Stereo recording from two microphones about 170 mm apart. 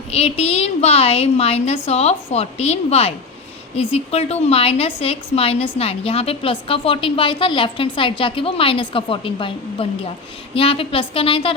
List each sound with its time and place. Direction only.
0.1 s a woman's voice: 35° left (ahead or behind)